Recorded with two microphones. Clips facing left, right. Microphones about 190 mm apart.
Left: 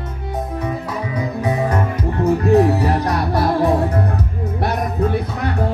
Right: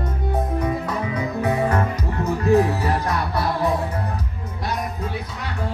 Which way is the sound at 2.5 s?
35° left (ahead or behind).